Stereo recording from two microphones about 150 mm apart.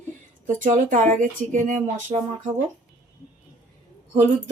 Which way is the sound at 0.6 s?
55° right (ahead or behind).